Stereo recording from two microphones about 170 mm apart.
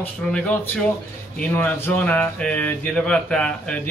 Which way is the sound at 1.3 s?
10° left (ahead or behind).